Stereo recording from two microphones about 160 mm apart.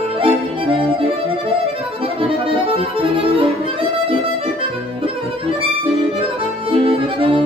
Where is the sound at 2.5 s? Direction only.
35° right (ahead or behind).